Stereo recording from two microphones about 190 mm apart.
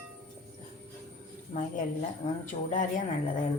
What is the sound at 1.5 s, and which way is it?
A woman's voice, 40° left (ahead or behind).